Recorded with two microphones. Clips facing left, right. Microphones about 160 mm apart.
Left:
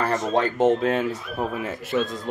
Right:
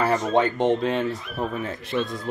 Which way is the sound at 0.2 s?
5° left (ahead or behind).